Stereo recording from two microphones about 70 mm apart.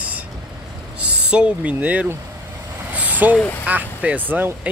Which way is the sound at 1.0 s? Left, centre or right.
Centre.